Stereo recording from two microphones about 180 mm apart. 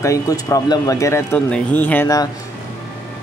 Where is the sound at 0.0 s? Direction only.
20° left (ahead or behind).